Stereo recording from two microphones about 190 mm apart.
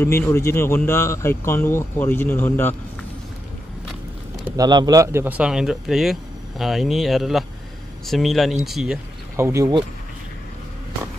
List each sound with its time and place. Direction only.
0.0 s speech: 15° left (ahead or behind)
4.6 s a man's voice: 20° right (ahead or behind); by 9.0 s centre (ahead or behind)
9.4 s a man's voice: 15° right (ahead or behind)